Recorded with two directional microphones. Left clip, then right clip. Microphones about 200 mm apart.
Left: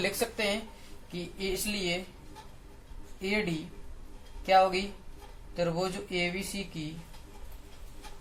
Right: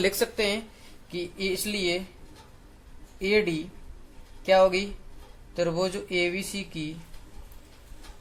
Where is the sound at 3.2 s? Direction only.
50° right (ahead or behind).